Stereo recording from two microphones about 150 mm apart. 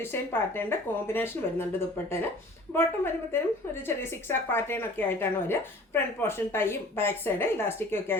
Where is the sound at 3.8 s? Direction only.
15° left (ahead or behind).